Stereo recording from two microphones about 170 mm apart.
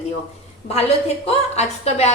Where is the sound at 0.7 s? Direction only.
35° left (ahead or behind).